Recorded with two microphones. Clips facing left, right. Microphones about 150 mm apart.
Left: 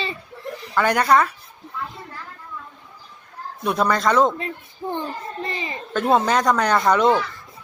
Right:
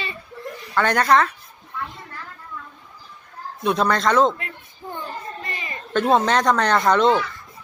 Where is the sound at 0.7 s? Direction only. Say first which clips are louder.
Even; 10° left (ahead or behind).